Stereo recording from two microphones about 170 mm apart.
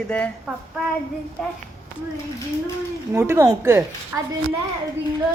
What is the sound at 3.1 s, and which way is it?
Speech, 15° right (ahead or behind).